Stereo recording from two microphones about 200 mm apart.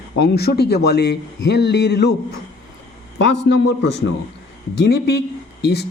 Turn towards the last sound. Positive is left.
turn(degrees=55)  # may be behind; listen again after turning